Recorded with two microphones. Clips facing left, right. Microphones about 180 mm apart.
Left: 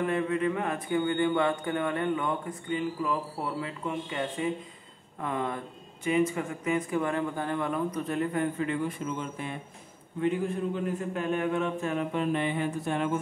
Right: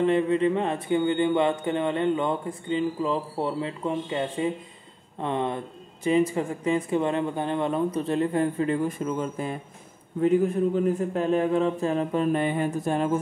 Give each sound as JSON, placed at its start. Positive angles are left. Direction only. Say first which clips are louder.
{"t": 0.0, "sound": "a man's voice", "louder": "right 6 dB", "side_deg": -25}